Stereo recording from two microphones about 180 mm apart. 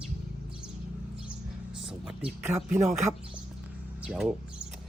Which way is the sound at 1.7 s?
5° right (ahead or behind).